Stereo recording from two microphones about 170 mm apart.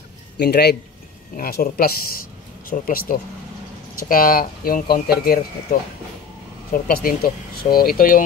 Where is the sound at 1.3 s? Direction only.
60° left (ahead or behind).